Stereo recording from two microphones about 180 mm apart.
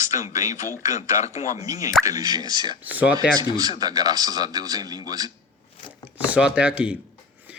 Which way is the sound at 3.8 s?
20° right (ahead or behind).